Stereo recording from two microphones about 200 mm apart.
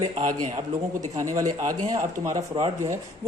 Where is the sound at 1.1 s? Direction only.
15° right (ahead or behind).